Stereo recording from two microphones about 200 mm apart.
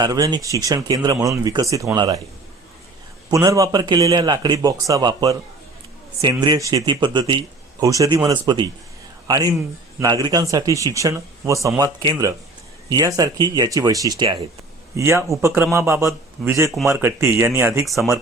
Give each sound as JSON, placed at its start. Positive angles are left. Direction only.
{"t": 0.0, "sound": "speech", "side_deg": -20}
{"t": 3.2, "sound": "a man's voice", "side_deg": -15}